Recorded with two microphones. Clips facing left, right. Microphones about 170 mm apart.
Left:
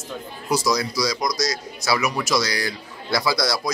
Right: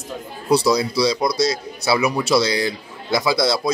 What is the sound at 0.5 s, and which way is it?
A man's voice, 30° right (ahead or behind).